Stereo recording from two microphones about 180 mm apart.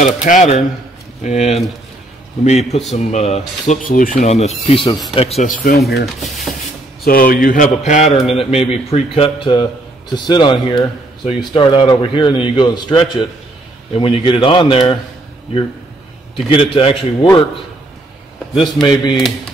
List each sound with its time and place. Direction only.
0.0 s a man's voice: 40° left (ahead or behind)
6.1 s speech: centre (ahead or behind)
7.1 s a man's voice: 50° left (ahead or behind); by 15.0 s 25° left (ahead or behind)
16.4 s speech: 30° left (ahead or behind)
18.5 s speech: 25° left (ahead or behind)